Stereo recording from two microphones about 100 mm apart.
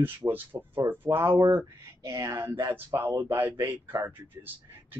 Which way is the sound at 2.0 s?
35° right (ahead or behind).